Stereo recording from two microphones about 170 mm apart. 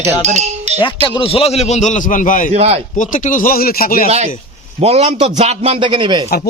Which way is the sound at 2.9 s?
50° left (ahead or behind).